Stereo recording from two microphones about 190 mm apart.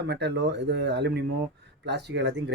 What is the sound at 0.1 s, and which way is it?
Speech, 65° right (ahead or behind).